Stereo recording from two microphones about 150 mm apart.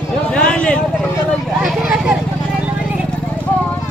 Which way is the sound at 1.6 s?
5° right (ahead or behind).